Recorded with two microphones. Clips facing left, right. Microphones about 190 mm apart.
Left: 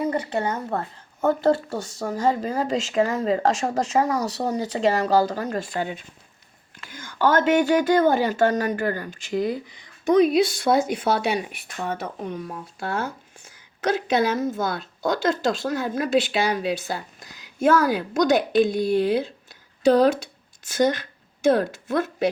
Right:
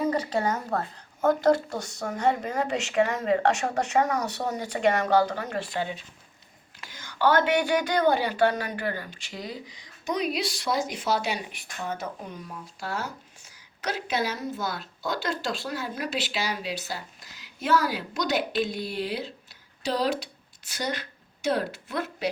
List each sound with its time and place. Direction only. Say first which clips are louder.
0.1 s a woman's voice: left 1 dB; 25° left (ahead or behind); by 22.3 s 45° left (ahead or behind)